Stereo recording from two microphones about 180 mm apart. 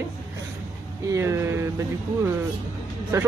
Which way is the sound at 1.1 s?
15° right (ahead or behind).